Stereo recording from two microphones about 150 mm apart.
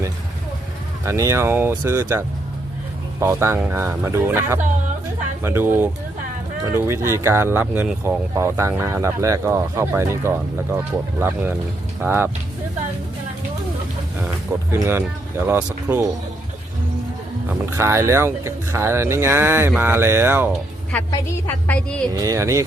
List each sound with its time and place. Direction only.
1.0 s speech: 20° right (ahead or behind)
12.0 s speech: 15° right (ahead or behind)
14.7 s speech: 15° right (ahead or behind)
17.7 s speech: 20° right (ahead or behind)
21.1 s a woman's voice: 15° left (ahead or behind)
22.1 s speech: 20° right (ahead or behind)